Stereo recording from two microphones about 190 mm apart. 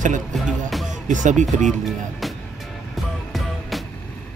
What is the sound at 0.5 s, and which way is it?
Music, centre (ahead or behind).